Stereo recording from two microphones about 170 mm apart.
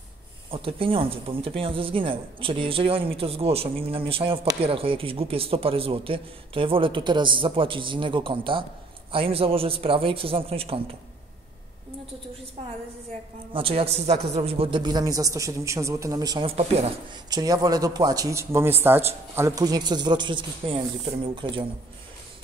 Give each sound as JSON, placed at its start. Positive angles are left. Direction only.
{"t": 0.5, "sound": "a man's voice", "side_deg": -30}
{"t": 13.5, "sound": "a man's voice", "side_deg": -35}
{"t": 17.3, "sound": "a man's voice", "side_deg": -20}